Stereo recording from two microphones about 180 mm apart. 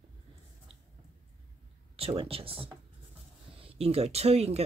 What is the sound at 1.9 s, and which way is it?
Speech, 30° right (ahead or behind).